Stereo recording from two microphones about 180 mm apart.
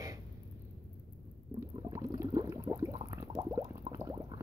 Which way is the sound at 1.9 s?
15° right (ahead or behind).